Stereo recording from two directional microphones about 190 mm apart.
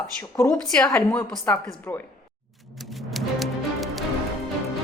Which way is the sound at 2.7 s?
Centre (ahead or behind).